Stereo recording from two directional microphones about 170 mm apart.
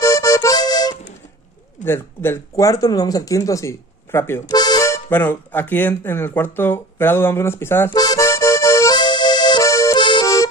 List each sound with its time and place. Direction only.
0.0 s accordion: 20° left (ahead or behind)
1.9 s speech: 15° left (ahead or behind)